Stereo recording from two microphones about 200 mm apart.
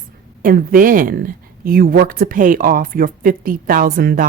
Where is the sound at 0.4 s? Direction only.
45° right (ahead or behind).